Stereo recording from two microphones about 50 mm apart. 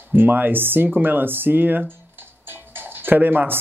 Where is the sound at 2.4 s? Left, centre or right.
Right.